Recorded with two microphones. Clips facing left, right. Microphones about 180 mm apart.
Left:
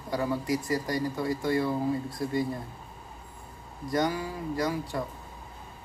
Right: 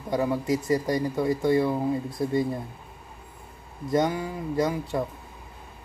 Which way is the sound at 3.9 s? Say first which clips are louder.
Right 4 dB; 25° right (ahead or behind).